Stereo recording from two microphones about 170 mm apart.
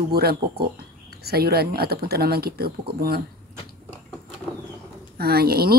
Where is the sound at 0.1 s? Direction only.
65° right (ahead or behind).